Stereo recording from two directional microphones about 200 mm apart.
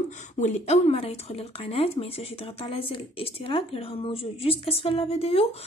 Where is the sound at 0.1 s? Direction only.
35° left (ahead or behind).